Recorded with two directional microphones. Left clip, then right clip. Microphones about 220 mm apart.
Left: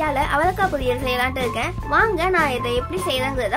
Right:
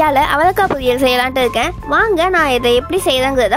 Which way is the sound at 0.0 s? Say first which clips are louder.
Right 8 dB; 45° right (ahead or behind).